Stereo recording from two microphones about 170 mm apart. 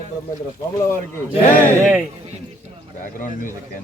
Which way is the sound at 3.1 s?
50° left (ahead or behind).